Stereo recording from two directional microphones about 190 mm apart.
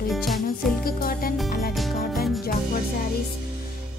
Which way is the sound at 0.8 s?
50° left (ahead or behind).